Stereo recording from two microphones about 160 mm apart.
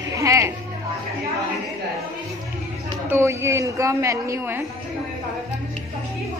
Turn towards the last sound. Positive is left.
turn(degrees=-15)  # may be behind; listen again after turning